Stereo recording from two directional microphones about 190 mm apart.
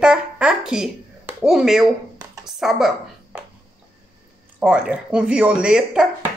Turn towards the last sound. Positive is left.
turn(degrees=-5)  # may be behind; listen again after turning